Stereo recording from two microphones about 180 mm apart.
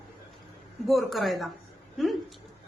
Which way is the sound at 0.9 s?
Centre (ahead or behind).